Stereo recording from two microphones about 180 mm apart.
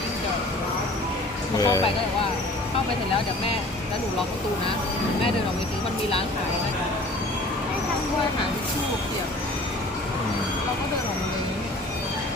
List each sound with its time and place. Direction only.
1.5 s speech: 20° left (ahead or behind)